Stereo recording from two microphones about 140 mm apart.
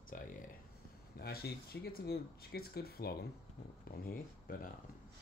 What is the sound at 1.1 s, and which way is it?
Speech, 90° left.